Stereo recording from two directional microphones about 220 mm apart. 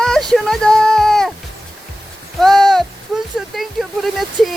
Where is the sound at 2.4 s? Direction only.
Centre (ahead or behind).